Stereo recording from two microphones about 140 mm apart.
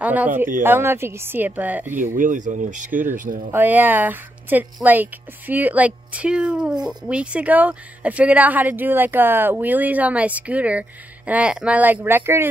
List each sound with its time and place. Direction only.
0.0 s speech: 10° right (ahead or behind)
2.0 s speech: 65° right (ahead or behind)
3.5 s speech: 10° right (ahead or behind)